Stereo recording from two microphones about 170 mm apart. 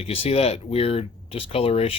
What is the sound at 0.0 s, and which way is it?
Speech, 35° left (ahead or behind).